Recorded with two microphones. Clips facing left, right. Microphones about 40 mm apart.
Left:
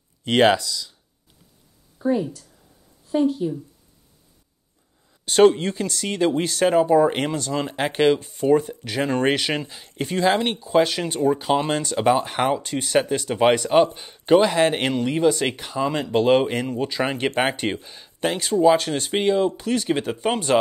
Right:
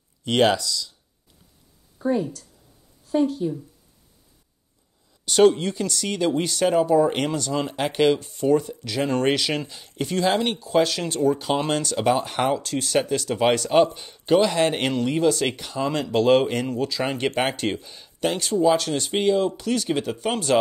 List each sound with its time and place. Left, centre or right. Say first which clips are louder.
0.2 s speech: left 2 dB; left
2.0 s a woman's voice: left 1 dB; centre
5.2 s speech: left 2 dB; centre
8.4 s speech: left 2 dB; left
9.0 s speech: left 1 dB; centre
16.8 s speech: left 1 dB; left